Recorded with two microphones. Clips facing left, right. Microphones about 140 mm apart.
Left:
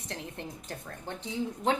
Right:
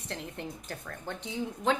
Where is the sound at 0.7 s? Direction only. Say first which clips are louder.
Right 1 dB; 25° left (ahead or behind).